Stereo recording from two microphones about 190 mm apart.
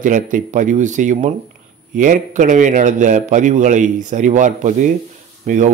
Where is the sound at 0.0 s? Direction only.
40° right (ahead or behind).